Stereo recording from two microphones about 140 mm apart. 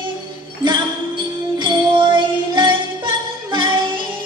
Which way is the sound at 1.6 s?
30° right (ahead or behind).